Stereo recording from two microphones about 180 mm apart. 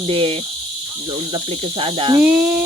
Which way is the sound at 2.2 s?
10° right (ahead or behind).